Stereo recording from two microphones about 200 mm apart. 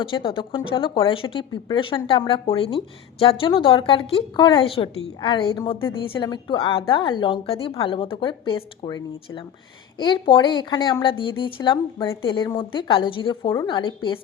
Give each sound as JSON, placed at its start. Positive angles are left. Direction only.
{"t": 0.0, "sound": "a woman's voice", "side_deg": 25}